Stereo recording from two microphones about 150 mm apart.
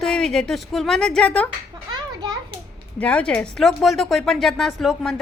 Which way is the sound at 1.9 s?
30° right (ahead or behind).